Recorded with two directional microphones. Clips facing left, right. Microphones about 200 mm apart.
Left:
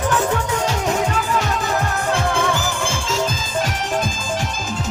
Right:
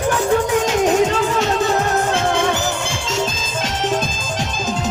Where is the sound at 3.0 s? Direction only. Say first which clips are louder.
Right 1 dB; 75° right (ahead or behind).